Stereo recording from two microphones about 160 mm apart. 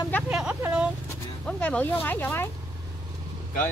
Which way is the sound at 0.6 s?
10° right (ahead or behind).